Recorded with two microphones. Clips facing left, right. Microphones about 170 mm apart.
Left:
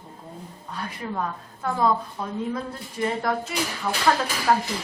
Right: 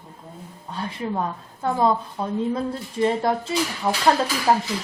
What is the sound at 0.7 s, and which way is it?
A woman's voice, 30° right (ahead or behind).